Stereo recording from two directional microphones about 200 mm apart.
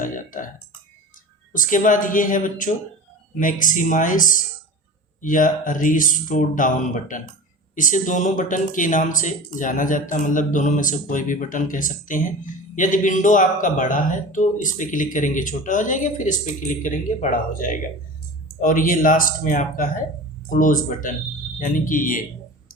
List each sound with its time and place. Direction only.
0.0 s burping: 40° left (ahead or behind)
1.5 s speech: 40° left (ahead or behind)